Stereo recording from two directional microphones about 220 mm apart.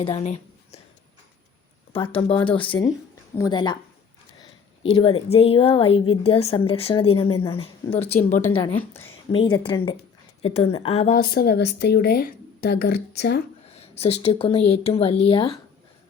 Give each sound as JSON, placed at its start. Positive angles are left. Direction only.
{"t": 0.0, "sound": "a woman's voice", "side_deg": 30}
{"t": 1.9, "sound": "speech", "side_deg": 25}
{"t": 8.8, "sound": "a woman's voice", "side_deg": 10}
{"t": 9.3, "sound": "speech", "side_deg": 25}
{"t": 11.2, "sound": "speech", "side_deg": 45}
{"t": 13.7, "sound": "speech", "side_deg": 30}